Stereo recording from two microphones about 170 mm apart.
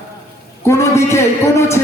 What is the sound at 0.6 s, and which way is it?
Music, 15° left (ahead or behind).